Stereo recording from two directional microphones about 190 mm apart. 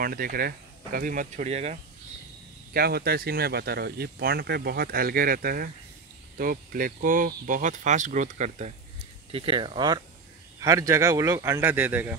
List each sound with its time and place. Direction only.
0.0 s speech: 50° right (ahead or behind)
2.7 s speech: 55° right (ahead or behind); by 12.2 s 10° right (ahead or behind)